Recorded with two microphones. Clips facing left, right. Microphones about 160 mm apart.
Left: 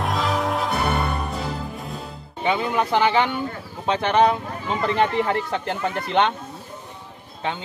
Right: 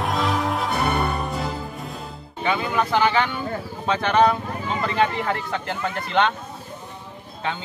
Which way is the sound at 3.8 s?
20° left (ahead or behind).